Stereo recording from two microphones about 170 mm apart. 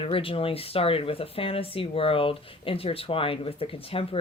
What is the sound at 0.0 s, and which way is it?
Speech, 30° left (ahead or behind).